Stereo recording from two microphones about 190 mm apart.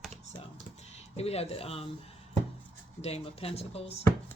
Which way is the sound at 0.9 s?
35° left (ahead or behind).